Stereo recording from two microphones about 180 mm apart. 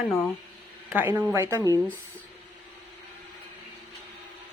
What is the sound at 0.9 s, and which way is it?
Speech, 10° right (ahead or behind).